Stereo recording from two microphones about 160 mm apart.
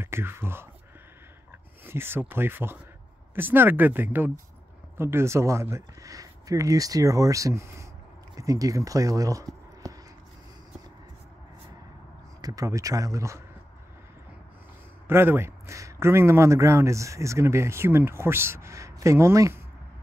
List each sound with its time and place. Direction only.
0.0 s speech: 15° right (ahead or behind)
1.9 s speech: 15° right (ahead or behind)
12.4 s speech: 20° right (ahead or behind)
15.0 s speech: 15° right (ahead or behind)